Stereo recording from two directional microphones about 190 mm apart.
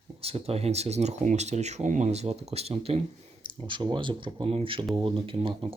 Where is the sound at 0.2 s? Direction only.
30° right (ahead or behind).